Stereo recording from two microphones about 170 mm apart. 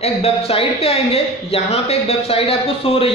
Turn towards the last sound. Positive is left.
turn(degrees=35)  # may be behind; listen again after turning